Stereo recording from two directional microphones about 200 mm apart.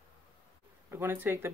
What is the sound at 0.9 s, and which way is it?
Speech, 10° right (ahead or behind).